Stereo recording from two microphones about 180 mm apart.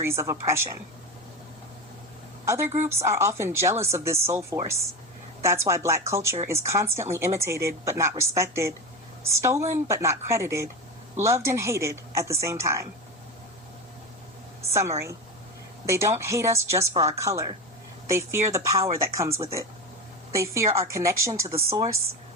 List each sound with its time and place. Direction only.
0.0 s speech: 15° right (ahead or behind)
2.8 s speech: 15° right (ahead or behind)
14.7 s a woman's voice: 15° right (ahead or behind)